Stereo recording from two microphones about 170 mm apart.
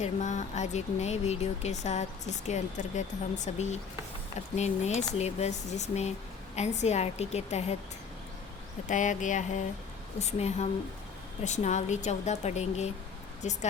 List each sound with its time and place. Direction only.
0.0 s speech: 45° left (ahead or behind)
8.9 s speech: 45° left (ahead or behind)